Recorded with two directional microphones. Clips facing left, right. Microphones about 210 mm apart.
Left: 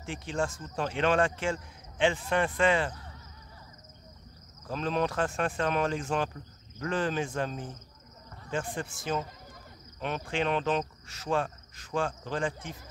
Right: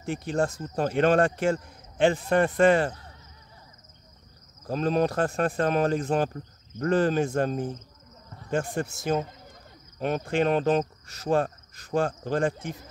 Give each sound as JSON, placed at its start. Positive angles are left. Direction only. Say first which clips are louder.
{"t": 0.0, "sound": "speech", "louder": "right 6 dB", "side_deg": -40}
{"t": 4.6, "sound": "speech", "louder": "right 6 dB", "side_deg": -40}